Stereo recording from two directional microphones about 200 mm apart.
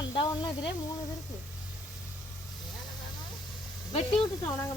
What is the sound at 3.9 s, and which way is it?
Speech, 25° left (ahead or behind).